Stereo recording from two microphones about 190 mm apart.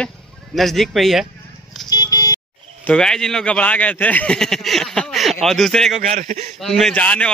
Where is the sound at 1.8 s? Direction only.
20° left (ahead or behind).